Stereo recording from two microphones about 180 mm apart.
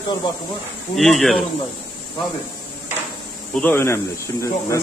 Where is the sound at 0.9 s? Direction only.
Centre (ahead or behind).